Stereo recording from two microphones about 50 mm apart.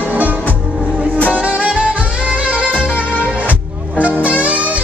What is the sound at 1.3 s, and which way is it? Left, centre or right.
Music, right.